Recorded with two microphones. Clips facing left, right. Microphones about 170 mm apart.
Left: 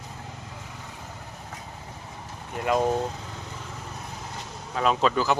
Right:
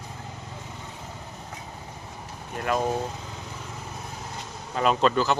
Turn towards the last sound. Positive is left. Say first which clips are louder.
# right 1 dB
turn(degrees=5)  # may be behind; listen again after turning